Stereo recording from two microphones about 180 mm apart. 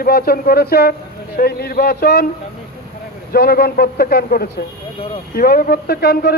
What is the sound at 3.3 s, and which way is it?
Speech, 60° left (ahead or behind).